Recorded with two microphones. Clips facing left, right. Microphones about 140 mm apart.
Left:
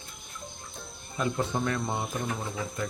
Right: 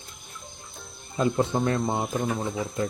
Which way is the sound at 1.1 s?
25° right (ahead or behind).